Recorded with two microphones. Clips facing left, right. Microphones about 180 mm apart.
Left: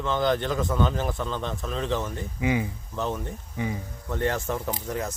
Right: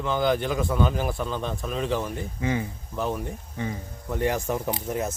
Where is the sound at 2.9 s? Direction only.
10° right (ahead or behind).